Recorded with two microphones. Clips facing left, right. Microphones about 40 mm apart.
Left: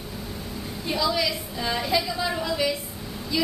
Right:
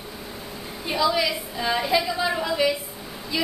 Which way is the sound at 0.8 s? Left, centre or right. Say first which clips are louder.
Right 3 dB; centre.